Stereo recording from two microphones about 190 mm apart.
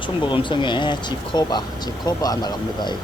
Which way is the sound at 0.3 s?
25° left (ahead or behind).